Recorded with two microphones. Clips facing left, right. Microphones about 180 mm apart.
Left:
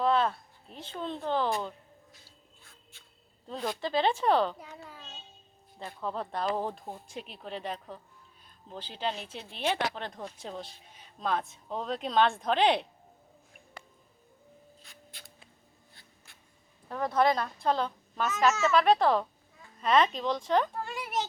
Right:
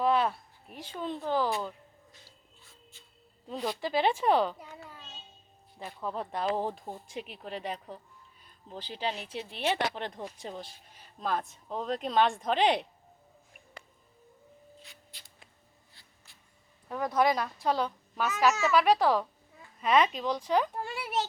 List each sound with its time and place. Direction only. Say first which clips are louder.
0.0 s a sound: even; 10° right (ahead or behind)
0.9 s speech: even; 10° right (ahead or behind)
3.4 s speech: even; 5° right (ahead or behind)
16.0 s writing: left 3 dB; 55° left (ahead or behind)
16.9 s a child's voice: left 1 dB; 5° right (ahead or behind)